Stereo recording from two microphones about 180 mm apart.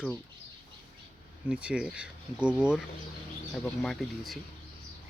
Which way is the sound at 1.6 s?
5° right (ahead or behind).